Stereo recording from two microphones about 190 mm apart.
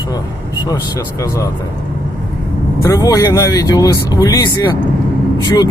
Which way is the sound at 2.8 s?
20° left (ahead or behind).